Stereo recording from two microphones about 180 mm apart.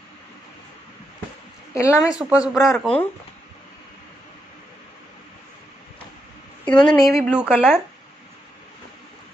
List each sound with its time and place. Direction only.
1.8 s a woman's voice: 15° left (ahead or behind)
2.1 s speech: 5° right (ahead or behind)
6.6 s speech: 5° left (ahead or behind)